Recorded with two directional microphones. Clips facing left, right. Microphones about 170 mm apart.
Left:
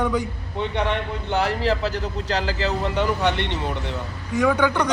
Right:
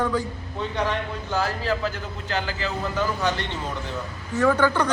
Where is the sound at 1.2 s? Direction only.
70° left (ahead or behind); by 2.5 s 90° left.